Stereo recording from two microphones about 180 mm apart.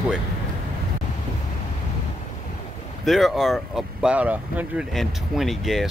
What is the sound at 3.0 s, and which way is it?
Speech, centre (ahead or behind).